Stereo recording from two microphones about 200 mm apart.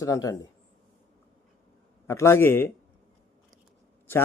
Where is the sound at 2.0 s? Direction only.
15° left (ahead or behind).